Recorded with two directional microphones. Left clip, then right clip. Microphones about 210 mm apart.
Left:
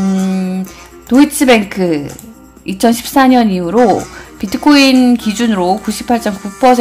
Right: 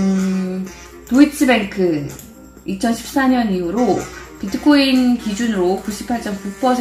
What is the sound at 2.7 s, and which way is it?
Speech, 35° left (ahead or behind).